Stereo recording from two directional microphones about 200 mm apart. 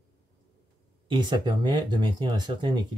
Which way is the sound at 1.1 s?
20° right (ahead or behind).